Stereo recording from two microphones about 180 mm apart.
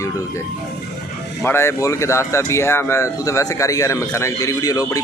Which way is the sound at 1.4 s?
15° left (ahead or behind).